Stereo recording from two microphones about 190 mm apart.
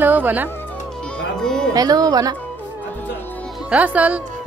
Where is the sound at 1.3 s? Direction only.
5° left (ahead or behind).